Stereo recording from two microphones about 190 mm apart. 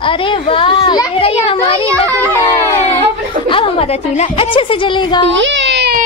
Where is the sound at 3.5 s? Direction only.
30° left (ahead or behind).